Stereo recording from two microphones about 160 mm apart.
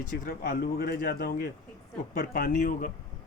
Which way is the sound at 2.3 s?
55° left (ahead or behind).